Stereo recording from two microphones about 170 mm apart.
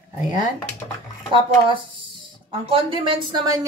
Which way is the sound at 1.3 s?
30° right (ahead or behind).